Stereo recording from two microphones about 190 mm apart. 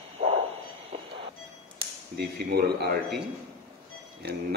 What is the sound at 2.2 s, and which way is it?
Speech, 60° right (ahead or behind).